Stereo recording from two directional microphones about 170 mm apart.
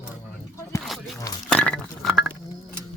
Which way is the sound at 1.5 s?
5° left (ahead or behind).